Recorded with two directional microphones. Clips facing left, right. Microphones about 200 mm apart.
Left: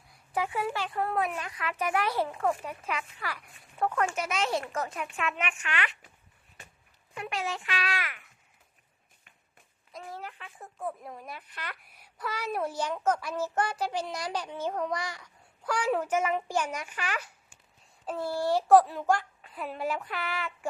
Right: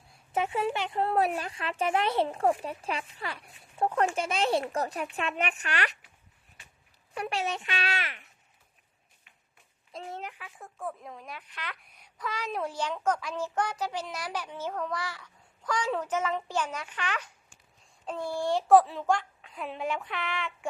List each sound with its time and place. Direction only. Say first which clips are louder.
0.1 s speech: right 2 dB; 25° right (ahead or behind)
1.1 s speech: right 4 dB; 35° right (ahead or behind)
6.6 s a sound: left 7 dB; 50° left (ahead or behind)
7.1 s speech: right 3 dB; 35° right (ahead or behind)
7.4 s speech: right 1 dB; 20° right (ahead or behind)
9.9 s a sound: right 2 dB; 20° right (ahead or behind)
10.3 s a child's voice: even; centre (ahead or behind)